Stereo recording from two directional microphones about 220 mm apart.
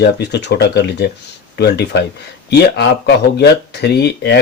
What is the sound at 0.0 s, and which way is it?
Speech, 50° left (ahead or behind).